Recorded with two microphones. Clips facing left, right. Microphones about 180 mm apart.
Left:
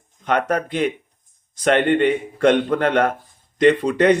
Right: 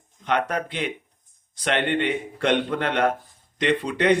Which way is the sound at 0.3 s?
45° left (ahead or behind).